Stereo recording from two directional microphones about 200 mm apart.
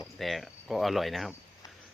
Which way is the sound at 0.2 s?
Centre (ahead or behind).